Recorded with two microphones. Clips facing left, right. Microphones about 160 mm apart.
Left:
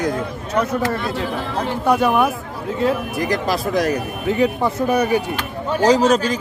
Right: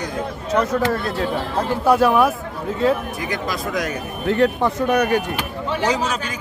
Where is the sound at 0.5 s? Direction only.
Centre (ahead or behind).